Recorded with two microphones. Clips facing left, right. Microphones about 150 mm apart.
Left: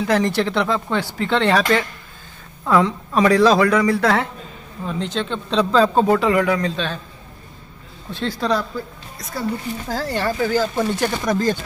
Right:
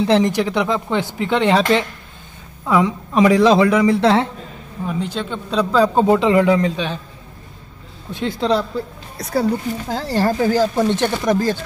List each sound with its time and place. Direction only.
0.0 s speech: 20° right (ahead or behind)
2.6 s a man's voice: 15° right (ahead or behind)
4.8 s speech: 10° right (ahead or behind)
6.0 s a man's voice: 20° right (ahead or behind)
8.1 s a man's voice: 20° right (ahead or behind)
9.2 s speech: 70° right (ahead or behind)
9.8 s a man's voice: 20° right (ahead or behind)
10.1 s speech: 35° right (ahead or behind)
11.2 s speech: 10° right (ahead or behind)